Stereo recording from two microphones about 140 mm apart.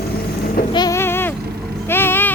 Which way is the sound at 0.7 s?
30° left (ahead or behind).